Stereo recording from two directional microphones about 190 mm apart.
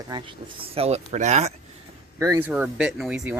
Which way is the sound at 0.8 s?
35° right (ahead or behind).